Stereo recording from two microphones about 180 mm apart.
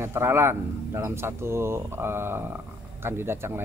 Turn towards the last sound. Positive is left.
turn(degrees=-15)  # may be behind; listen again after turning